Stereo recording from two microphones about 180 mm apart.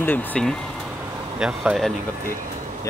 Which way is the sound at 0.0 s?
10° left (ahead or behind).